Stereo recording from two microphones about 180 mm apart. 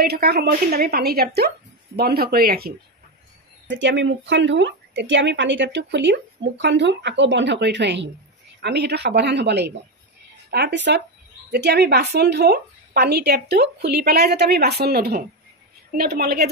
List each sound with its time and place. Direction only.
0.0 s a woman's voice: 60° right (ahead or behind)
3.6 s a woman's voice: 80° right
11.5 s a woman's voice: 65° right (ahead or behind)